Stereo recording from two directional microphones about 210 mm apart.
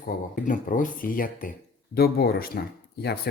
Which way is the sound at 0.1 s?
45° left (ahead or behind).